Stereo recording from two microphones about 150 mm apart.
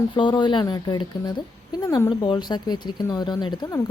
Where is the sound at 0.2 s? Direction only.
30° left (ahead or behind).